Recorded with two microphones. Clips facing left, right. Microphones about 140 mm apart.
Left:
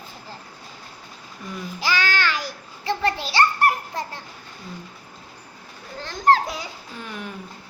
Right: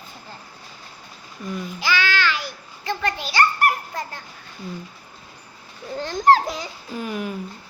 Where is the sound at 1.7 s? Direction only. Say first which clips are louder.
Even; 40° left (ahead or behind).